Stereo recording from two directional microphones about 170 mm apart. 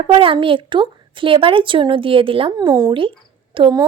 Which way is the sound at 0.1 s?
30° right (ahead or behind).